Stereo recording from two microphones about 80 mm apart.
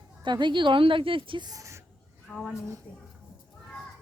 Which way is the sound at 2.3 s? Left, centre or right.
Centre.